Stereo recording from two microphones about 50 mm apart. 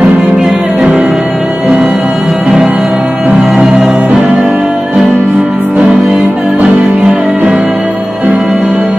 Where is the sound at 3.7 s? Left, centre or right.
Centre.